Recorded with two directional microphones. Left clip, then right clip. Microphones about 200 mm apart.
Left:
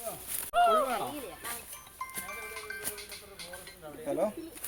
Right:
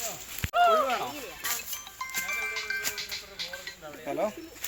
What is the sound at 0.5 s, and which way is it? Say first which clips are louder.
Speech: right 3 dB; 65° left (ahead or behind).